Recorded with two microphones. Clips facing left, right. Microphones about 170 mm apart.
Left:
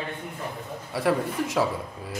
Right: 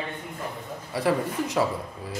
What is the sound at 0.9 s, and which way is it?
A man's voice, centre (ahead or behind).